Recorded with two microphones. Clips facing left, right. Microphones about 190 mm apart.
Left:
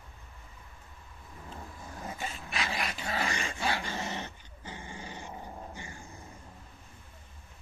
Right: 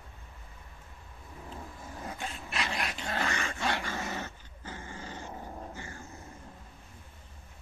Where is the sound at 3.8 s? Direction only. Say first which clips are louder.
Even; 20° left (ahead or behind).